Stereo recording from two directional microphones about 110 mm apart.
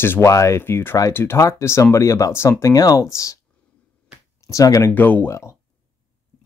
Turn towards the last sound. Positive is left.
turn(degrees=25)  # may be behind; listen again after turning